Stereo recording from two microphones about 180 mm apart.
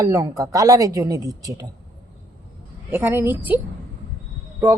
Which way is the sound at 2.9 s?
10° right (ahead or behind).